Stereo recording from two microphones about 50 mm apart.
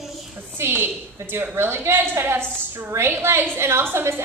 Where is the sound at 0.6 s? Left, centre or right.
Right.